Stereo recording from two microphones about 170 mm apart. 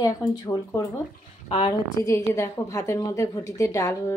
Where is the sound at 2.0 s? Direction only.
15° left (ahead or behind).